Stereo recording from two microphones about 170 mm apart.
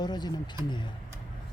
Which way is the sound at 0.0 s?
25° left (ahead or behind).